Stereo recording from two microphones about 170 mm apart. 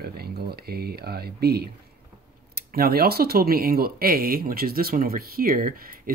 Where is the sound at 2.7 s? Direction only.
65° right (ahead or behind).